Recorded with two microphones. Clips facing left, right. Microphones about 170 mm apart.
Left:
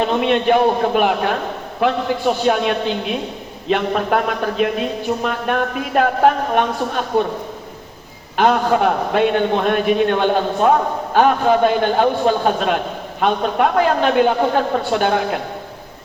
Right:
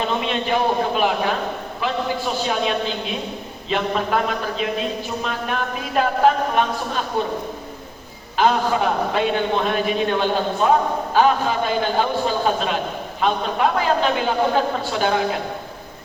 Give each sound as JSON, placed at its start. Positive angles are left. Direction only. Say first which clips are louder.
{"t": 0.0, "sound": "a man's voice", "louder": "left 6 dB", "side_deg": 60}
{"t": 8.4, "sound": "a man's voice", "louder": "left 3 dB", "side_deg": 55}